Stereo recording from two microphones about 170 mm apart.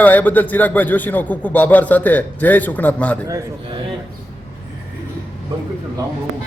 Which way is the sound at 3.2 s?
20° right (ahead or behind).